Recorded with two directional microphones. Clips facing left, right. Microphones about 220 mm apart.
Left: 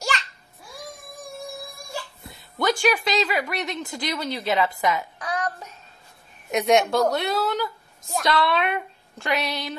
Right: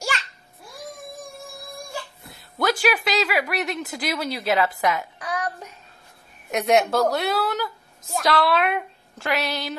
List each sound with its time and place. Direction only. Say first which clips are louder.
2.2 s speech: even; centre (ahead or behind)
5.2 s child singing: even; 10° right (ahead or behind)
6.5 s a woman's voice: even; centre (ahead or behind)